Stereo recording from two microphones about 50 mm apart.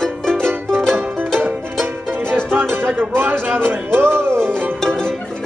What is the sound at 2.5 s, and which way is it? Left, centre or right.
Music, right.